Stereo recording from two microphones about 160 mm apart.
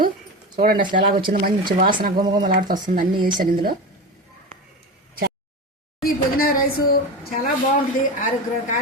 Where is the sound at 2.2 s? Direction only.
30° right (ahead or behind).